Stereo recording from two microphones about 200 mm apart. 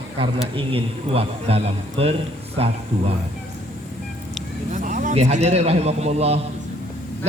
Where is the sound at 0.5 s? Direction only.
30° right (ahead or behind).